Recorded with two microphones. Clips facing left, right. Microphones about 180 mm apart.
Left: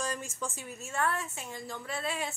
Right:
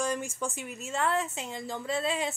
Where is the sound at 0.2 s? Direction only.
15° right (ahead or behind).